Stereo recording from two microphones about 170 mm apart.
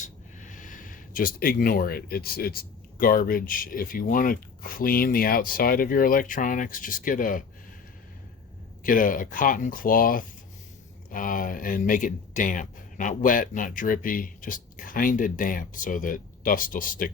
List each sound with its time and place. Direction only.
0.0 s speech: 50° left (ahead or behind)
8.8 s speech: 55° left (ahead or behind)